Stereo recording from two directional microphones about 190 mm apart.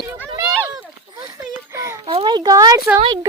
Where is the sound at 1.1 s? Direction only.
20° right (ahead or behind).